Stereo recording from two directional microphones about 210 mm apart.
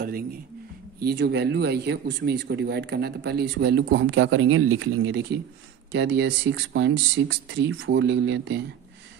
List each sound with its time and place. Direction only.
1.0 s speech: 55° right (ahead or behind)